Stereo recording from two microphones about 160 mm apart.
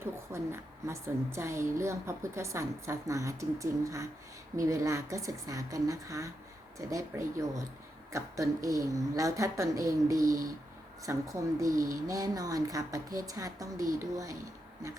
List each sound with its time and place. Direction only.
0.0 s a woman's voice: 15° right (ahead or behind)